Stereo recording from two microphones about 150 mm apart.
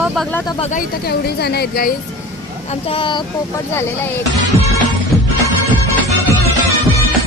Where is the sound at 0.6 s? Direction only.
50° left (ahead or behind).